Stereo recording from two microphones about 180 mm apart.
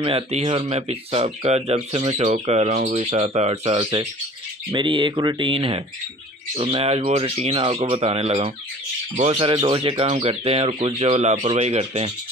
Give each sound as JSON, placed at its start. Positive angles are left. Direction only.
{"t": 0.0, "sound": "speech", "side_deg": -35}